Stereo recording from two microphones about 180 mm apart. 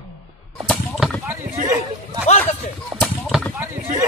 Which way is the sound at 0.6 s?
5° left (ahead or behind).